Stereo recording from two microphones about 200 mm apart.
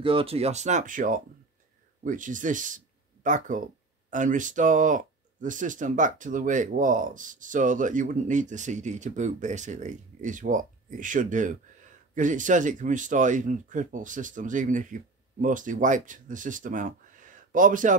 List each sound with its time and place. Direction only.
0.0 s speech: 25° right (ahead or behind)